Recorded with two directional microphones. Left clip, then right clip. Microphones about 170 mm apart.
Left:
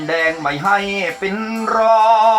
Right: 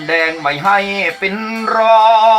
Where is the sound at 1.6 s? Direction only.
15° right (ahead or behind).